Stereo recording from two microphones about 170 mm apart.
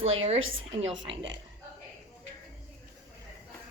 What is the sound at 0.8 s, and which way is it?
Speech, 90° right.